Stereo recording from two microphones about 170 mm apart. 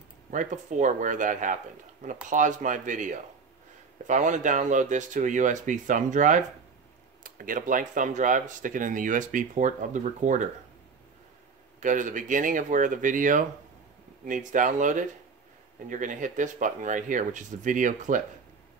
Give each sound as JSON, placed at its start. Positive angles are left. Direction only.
{"t": 0.3, "sound": "speech", "side_deg": -45}
{"t": 11.8, "sound": "speech", "side_deg": -50}